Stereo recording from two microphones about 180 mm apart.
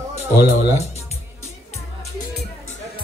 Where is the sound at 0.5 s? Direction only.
40° left (ahead or behind).